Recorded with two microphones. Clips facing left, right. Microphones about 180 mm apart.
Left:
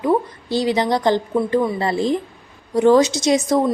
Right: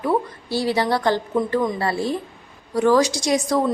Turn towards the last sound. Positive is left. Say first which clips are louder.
# left 3 dB
turn(degrees=20)  # may be behind; listen again after turning